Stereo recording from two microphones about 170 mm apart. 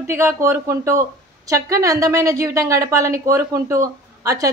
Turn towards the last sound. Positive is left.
turn(degrees=-20)  # may be behind; listen again after turning